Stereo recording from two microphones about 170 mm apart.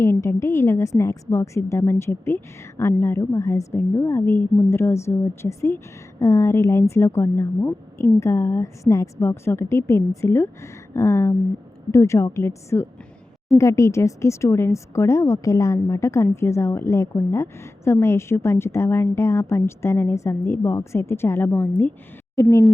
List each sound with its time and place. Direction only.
0.0 s a woman's voice: 15° left (ahead or behind)